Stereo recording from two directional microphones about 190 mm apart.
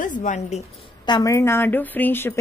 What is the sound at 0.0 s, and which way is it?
Speech, 40° left (ahead or behind).